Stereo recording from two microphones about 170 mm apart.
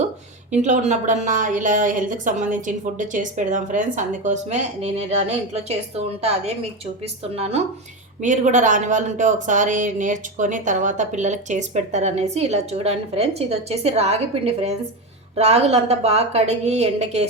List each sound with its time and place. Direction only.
0.5 s speech: 45° right (ahead or behind)
7.3 s a woman's voice: 35° right (ahead or behind)